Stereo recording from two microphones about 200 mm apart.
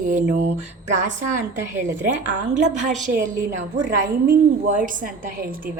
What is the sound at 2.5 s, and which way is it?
A woman's voice, 35° right (ahead or behind).